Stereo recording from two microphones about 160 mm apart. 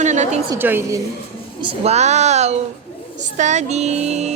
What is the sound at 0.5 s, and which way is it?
Speech, 15° right (ahead or behind).